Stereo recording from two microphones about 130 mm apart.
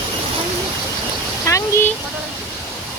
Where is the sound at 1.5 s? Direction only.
25° left (ahead or behind).